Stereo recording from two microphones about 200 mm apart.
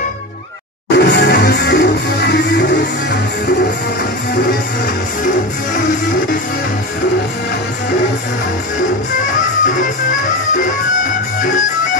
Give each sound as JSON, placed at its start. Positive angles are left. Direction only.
{"t": 0.9, "sound": "music", "side_deg": 60}
{"t": 9.2, "sound": "music", "side_deg": 40}